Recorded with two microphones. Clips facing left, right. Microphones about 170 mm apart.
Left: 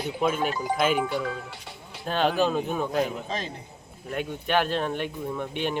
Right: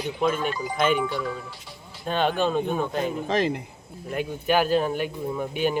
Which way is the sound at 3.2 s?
90° right.